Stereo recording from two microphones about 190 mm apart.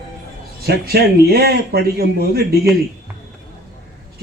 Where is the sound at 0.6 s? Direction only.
55° right (ahead or behind).